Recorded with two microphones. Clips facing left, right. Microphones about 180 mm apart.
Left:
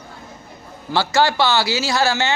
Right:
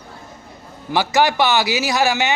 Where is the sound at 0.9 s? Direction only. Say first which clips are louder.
Right 1 dB; 15° right (ahead or behind).